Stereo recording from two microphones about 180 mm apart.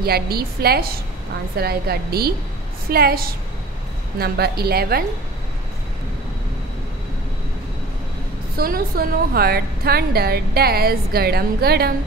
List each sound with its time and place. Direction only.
0.0 s a woman's voice: 60° right (ahead or behind)
8.5 s a woman's voice: 55° right (ahead or behind)